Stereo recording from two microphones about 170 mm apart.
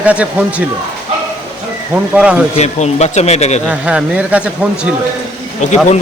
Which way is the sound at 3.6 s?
5° right (ahead or behind).